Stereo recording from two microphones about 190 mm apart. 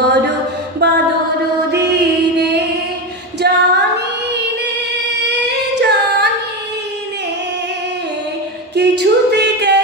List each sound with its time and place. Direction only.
0.8 s music: 60° right (ahead or behind)
3.3 s female singing: 60° right (ahead or behind)
5.4 s singing: 65° right (ahead or behind)
8.7 s a sound: 65° right (ahead or behind)